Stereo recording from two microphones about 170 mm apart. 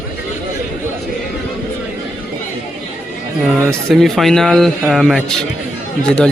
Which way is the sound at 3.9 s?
Centre (ahead or behind).